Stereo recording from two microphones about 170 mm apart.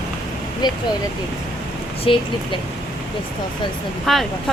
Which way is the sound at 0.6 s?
25° left (ahead or behind).